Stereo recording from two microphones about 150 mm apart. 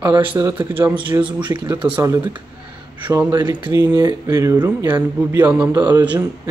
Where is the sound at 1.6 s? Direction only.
30° right (ahead or behind).